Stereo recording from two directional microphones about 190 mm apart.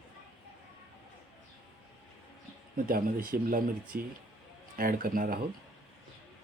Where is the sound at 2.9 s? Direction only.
50° right (ahead or behind).